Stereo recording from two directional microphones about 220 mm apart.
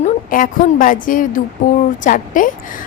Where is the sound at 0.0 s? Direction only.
40° left (ahead or behind).